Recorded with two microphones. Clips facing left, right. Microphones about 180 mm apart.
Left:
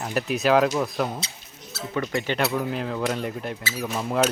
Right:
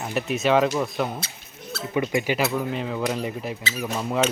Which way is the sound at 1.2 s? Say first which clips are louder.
Even; 55° right (ahead or behind).